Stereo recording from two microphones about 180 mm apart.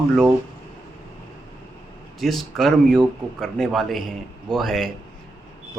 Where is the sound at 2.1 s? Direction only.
Centre (ahead or behind).